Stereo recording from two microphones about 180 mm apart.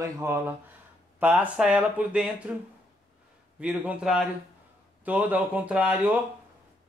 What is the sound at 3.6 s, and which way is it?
A man's voice, 5° right (ahead or behind).